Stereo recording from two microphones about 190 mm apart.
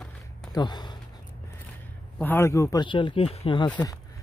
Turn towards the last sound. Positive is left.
turn(degrees=25)  # may be behind; listen again after turning